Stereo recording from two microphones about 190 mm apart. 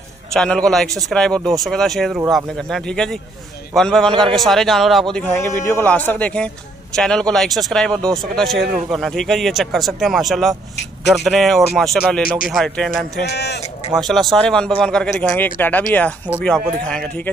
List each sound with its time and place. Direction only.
0.3 s speech: 5° left (ahead or behind)
5.1 s a man's voice: 10° left (ahead or behind)
13.3 s speech: 60° left (ahead or behind)
14.0 s speech: centre (ahead or behind)